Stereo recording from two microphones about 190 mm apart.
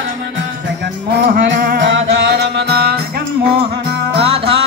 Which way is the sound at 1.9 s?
65° right (ahead or behind).